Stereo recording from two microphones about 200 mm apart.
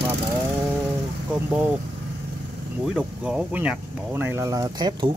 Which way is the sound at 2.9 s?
5° right (ahead or behind).